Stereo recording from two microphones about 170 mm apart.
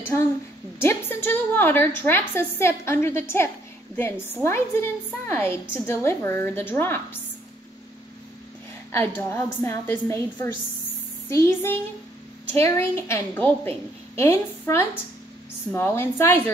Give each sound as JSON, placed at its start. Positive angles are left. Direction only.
{"t": 0.7, "sound": "a woman's voice", "side_deg": 15}
{"t": 8.9, "sound": "a woman's voice", "side_deg": 15}